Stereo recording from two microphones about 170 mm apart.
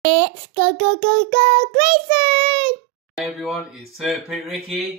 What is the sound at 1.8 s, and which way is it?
Child singing, 40° right (ahead or behind).